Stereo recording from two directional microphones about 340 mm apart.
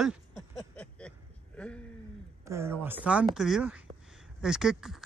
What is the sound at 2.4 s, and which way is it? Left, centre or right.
Speech, centre.